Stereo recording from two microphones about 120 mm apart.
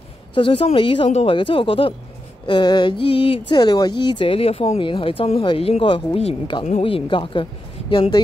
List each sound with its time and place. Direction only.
0.3 s speech: 45° left (ahead or behind)
2.4 s speech: 40° left (ahead or behind)